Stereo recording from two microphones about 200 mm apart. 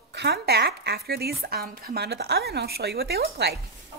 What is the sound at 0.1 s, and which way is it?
Speech, 55° right (ahead or behind).